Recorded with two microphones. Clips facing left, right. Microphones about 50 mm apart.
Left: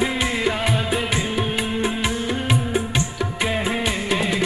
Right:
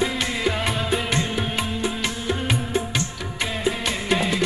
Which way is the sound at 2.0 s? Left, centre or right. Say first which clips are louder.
Left 2 dB; centre.